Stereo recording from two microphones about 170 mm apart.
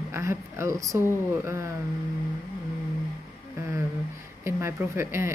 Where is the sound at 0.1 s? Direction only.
15° right (ahead or behind).